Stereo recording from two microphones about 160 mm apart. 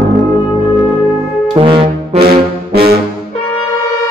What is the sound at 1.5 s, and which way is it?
Brass instrument, 30° right (ahead or behind).